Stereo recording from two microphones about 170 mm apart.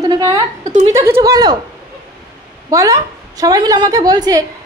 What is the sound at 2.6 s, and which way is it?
A woman's voice, 20° right (ahead or behind).